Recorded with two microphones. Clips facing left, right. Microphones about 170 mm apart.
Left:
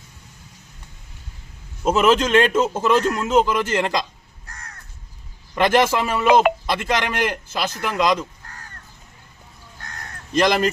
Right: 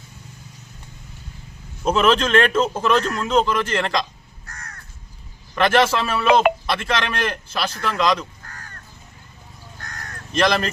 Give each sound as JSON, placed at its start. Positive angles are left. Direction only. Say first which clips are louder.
{"t": 2.0, "sound": "speech", "louder": "left 1 dB", "side_deg": 20}
{"t": 5.5, "sound": "speech", "louder": "even", "side_deg": 15}
{"t": 10.3, "sound": "speech", "louder": "left 2 dB", "side_deg": 15}